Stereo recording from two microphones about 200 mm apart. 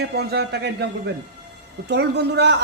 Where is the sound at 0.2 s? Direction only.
55° right (ahead or behind).